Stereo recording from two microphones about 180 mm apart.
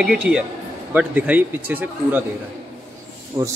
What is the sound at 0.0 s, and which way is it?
A man's voice, 5° right (ahead or behind).